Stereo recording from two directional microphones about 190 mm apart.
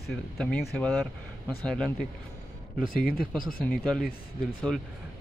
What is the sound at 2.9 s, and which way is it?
Speech, 50° left (ahead or behind).